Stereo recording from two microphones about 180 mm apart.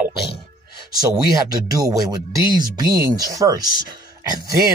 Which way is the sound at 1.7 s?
20° right (ahead or behind).